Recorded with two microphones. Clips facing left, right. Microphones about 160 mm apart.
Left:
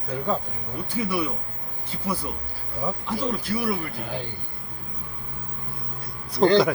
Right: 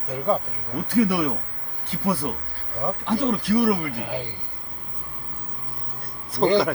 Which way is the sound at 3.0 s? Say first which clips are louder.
Right 5 dB; 80° right.